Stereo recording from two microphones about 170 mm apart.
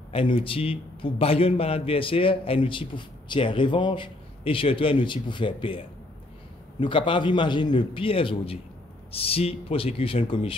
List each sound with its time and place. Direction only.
0.1 s a man's voice: 30° left (ahead or behind)
6.8 s a man's voice: 30° left (ahead or behind)